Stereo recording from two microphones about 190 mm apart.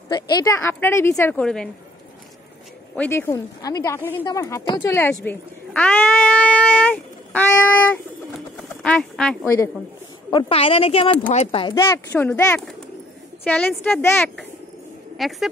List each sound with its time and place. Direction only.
0.1 s a woman's voice: 20° left (ahead or behind); by 1.7 s 5° left (ahead or behind)
3.0 s a woman's voice: 10° left (ahead or behind)
5.2 s a sound: 10° left (ahead or behind)
8.8 s speech: 5° left (ahead or behind)
10.3 s speech: 30° left (ahead or behind)
11.7 s a woman's voice: 15° left (ahead or behind)